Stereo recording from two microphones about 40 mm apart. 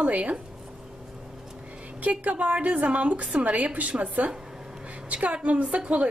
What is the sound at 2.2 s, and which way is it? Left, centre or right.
A woman's voice, right.